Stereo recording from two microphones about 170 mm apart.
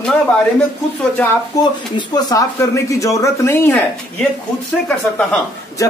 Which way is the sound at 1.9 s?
20° left (ahead or behind).